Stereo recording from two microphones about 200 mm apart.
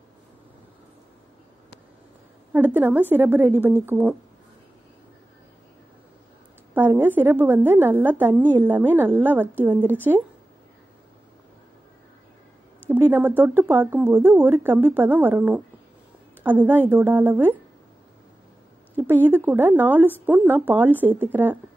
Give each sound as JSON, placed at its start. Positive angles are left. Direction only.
{"t": 2.5, "sound": "a woman's voice", "side_deg": -10}
{"t": 6.7, "sound": "a woman's voice", "side_deg": -10}
{"t": 12.9, "sound": "a woman's voice", "side_deg": -10}
{"t": 18.9, "sound": "a woman's voice", "side_deg": -10}